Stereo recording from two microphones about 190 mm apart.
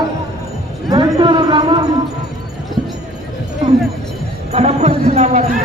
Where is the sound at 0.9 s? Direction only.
25° right (ahead or behind).